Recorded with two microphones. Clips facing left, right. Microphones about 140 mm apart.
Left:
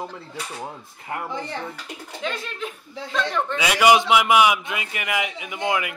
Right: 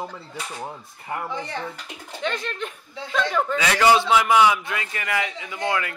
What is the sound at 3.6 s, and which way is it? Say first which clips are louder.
A man's voice: left 2 dB; 10° left (ahead or behind).